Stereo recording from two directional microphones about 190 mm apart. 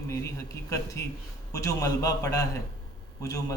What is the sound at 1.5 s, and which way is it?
A man's voice, 15° left (ahead or behind).